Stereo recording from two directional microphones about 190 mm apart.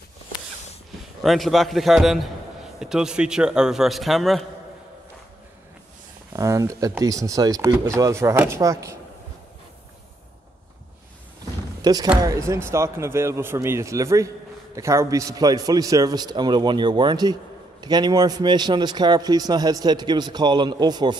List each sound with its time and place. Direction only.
1.2 s a man's voice: centre (ahead or behind)
6.3 s speech: 15° right (ahead or behind)
11.8 s a man's voice: 20° right (ahead or behind)